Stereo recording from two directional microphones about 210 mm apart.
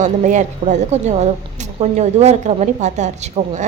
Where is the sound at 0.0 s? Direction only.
35° right (ahead or behind).